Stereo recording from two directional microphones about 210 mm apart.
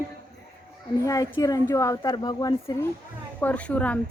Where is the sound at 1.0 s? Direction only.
15° left (ahead or behind).